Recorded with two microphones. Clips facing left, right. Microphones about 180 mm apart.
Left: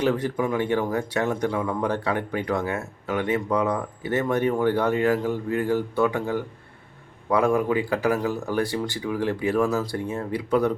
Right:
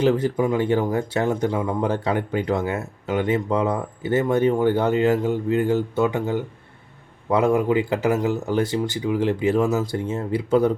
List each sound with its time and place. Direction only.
0.0 s speech: 25° right (ahead or behind)